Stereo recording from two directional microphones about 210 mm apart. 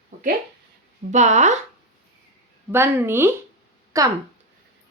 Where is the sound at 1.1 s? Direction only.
35° right (ahead or behind).